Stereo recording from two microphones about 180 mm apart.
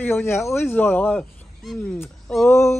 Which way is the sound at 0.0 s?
10° left (ahead or behind).